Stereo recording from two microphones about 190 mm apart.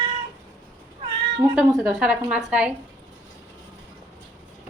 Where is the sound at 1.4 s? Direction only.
5° right (ahead or behind).